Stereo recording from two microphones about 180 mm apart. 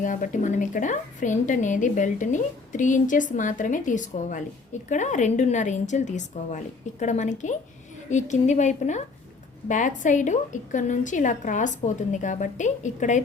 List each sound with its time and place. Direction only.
0.0 s a woman's voice: 45° left (ahead or behind)